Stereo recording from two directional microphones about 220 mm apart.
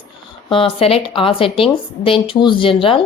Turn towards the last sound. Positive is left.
turn(degrees=25)  # may be behind; listen again after turning